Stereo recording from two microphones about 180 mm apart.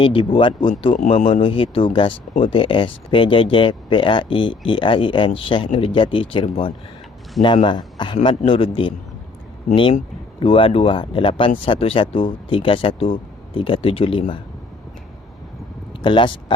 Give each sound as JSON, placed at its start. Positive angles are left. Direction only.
{"t": 0.0, "sound": "speech", "side_deg": 30}
{"t": 10.4, "sound": "speech", "side_deg": 30}
{"t": 16.0, "sound": "speech", "side_deg": 25}